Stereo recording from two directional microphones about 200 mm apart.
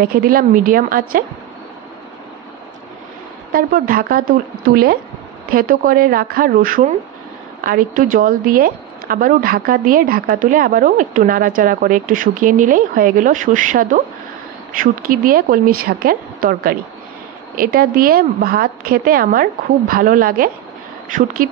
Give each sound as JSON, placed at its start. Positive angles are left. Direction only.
{"t": 0.0, "sound": "a woman's voice", "side_deg": -45}
{"t": 3.5, "sound": "a woman's voice", "side_deg": -45}